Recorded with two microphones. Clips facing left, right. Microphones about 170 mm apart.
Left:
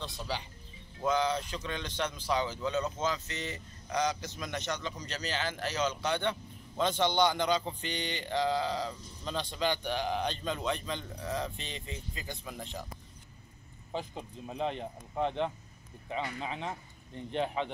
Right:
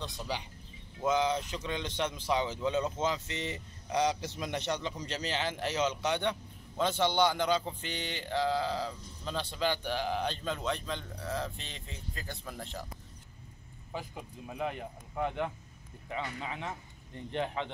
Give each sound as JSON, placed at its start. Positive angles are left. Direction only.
{"t": 0.3, "sound": "speech", "side_deg": -15}
{"t": 12.1, "sound": "speech", "side_deg": 15}
{"t": 13.9, "sound": "speech", "side_deg": 25}